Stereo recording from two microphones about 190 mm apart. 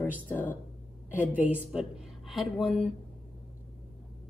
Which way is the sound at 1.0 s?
10° right (ahead or behind).